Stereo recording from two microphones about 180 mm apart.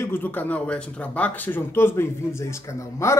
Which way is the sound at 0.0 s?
10° left (ahead or behind).